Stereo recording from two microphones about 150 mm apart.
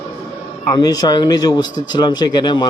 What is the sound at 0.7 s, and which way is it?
Speech, 25° left (ahead or behind).